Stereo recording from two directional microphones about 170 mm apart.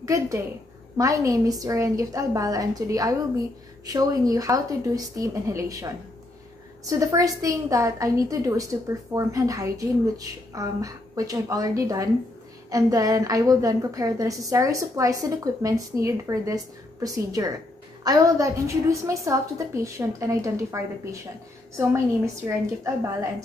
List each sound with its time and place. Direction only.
0.0 s a woman's voice: 20° right (ahead or behind)